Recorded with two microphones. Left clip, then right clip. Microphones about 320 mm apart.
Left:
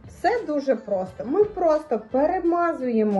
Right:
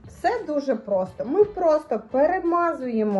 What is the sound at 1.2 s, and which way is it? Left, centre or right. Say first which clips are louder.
Speech: right 1 dB; centre.